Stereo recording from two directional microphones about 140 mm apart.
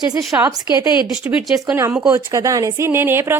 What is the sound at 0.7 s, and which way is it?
Speech, 35° left (ahead or behind).